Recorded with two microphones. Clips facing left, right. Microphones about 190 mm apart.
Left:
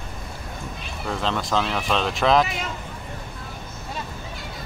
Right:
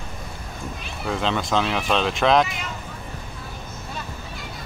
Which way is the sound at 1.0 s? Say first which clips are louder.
Right 2 dB; centre (ahead or behind).